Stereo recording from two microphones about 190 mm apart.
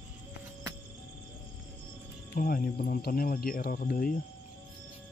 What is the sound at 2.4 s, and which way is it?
Speech, 50° left (ahead or behind).